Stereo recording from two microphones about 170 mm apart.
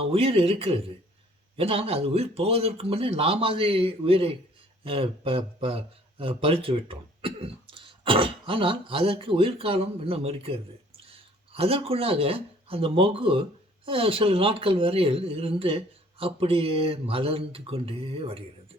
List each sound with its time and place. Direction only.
0.0 s a man's voice: 35° right (ahead or behind)